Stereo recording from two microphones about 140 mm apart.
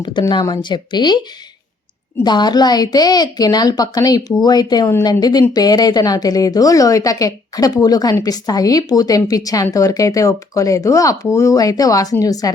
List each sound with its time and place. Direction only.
0.0 s speech: 35° left (ahead or behind)
2.2 s speech: 30° left (ahead or behind)